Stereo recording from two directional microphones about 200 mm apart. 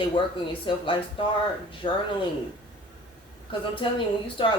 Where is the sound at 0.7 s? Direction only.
25° left (ahead or behind).